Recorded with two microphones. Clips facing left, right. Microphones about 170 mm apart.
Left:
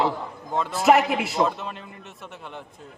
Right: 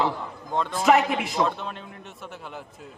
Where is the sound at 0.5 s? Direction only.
5° left (ahead or behind).